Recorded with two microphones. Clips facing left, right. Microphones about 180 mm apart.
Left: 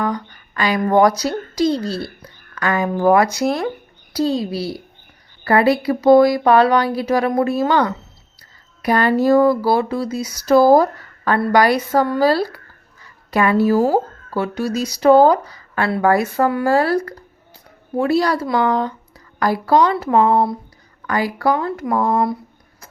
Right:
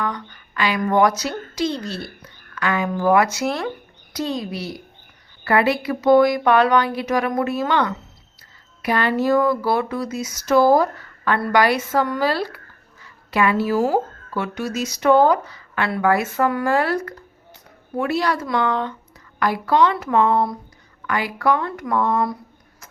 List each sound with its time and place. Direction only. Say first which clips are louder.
0.0 s a woman's voice: left 4 dB; 35° left (ahead or behind)